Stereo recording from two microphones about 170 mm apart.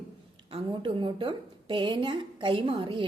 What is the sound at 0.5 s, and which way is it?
A woman's voice, 30° right (ahead or behind).